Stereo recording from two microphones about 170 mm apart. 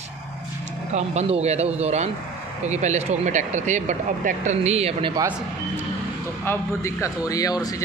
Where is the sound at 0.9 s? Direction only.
40° right (ahead or behind).